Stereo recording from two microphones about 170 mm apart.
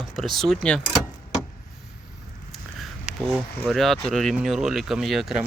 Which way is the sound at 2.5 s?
Centre (ahead or behind).